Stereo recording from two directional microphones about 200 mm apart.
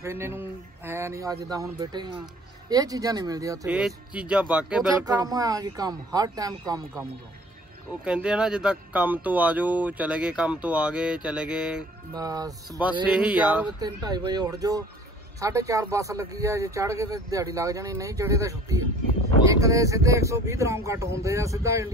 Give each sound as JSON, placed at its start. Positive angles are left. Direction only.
{"t": 0.0, "sound": "speech", "side_deg": -10}
{"t": 5.0, "sound": "speech", "side_deg": -20}
{"t": 8.0, "sound": "speech", "side_deg": -5}
{"t": 12.1, "sound": "speech", "side_deg": -20}
{"t": 13.1, "sound": "speech", "side_deg": -5}
{"t": 13.7, "sound": "speech", "side_deg": -20}